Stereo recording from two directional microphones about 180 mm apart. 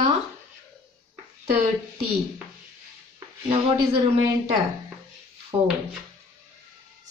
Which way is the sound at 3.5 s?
35° right (ahead or behind).